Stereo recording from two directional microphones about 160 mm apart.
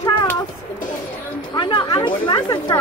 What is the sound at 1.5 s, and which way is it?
Speech, 30° left (ahead or behind).